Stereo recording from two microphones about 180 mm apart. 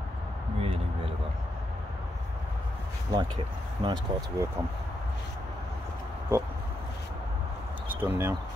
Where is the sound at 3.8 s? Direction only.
25° right (ahead or behind).